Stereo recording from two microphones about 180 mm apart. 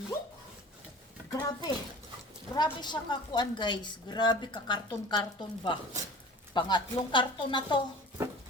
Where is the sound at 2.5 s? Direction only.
25° left (ahead or behind).